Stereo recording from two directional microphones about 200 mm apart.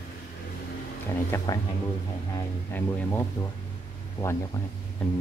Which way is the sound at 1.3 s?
20° left (ahead or behind).